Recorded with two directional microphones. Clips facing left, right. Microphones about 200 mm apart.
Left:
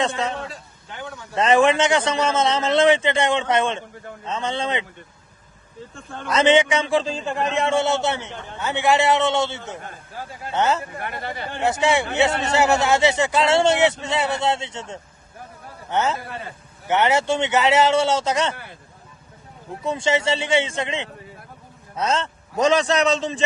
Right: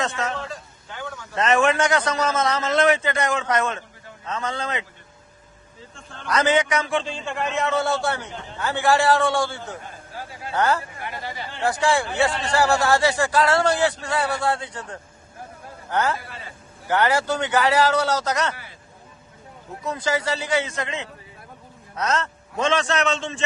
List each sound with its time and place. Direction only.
0.0 s a man's voice: 30° left (ahead or behind)
6.2 s a man's voice: 25° left (ahead or behind)
11.0 s speech: 55° left (ahead or behind)
11.6 s a man's voice: 20° left (ahead or behind)
18.5 s speech: 55° left (ahead or behind)
19.8 s a man's voice: 25° left (ahead or behind)